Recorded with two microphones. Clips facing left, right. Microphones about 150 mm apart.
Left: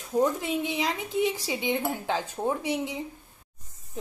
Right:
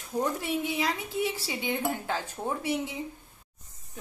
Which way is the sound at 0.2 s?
20° left (ahead or behind).